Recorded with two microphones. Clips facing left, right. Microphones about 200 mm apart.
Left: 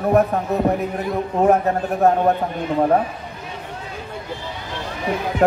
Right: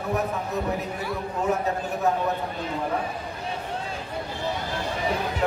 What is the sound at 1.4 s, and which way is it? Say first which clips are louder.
Speech: left 9 dB; 55° left (ahead or behind).